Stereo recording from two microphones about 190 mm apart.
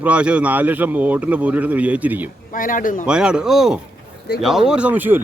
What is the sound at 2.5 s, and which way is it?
Speech, 45° left (ahead or behind).